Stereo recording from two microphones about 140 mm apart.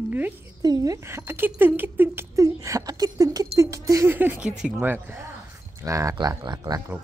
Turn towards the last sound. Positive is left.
turn(degrees=-30)  # may be behind; listen again after turning